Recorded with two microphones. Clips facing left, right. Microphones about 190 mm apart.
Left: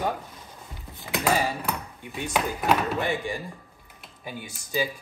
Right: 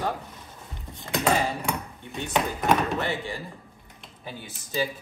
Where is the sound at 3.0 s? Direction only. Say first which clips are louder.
Left 2 dB; 15° left (ahead or behind).